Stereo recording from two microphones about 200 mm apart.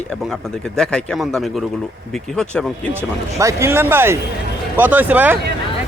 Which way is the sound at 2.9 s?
10° right (ahead or behind).